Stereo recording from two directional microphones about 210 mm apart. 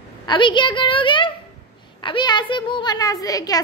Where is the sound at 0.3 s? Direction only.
20° left (ahead or behind).